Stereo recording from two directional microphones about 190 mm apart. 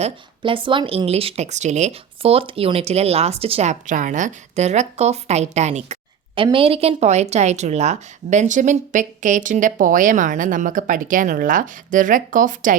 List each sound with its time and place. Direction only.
0.0 s speech: 25° right (ahead or behind); by 12.7 s 45° right (ahead or behind)